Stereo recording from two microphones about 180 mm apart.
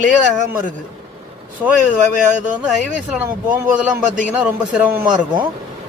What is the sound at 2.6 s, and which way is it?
A man's voice, 5° right (ahead or behind).